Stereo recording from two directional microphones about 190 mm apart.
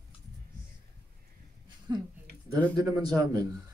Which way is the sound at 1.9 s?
20° right (ahead or behind).